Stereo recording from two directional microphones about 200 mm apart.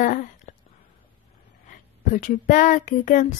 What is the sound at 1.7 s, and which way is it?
Speech, 40° left (ahead or behind).